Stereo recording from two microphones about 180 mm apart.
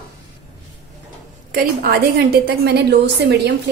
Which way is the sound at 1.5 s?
60° right (ahead or behind).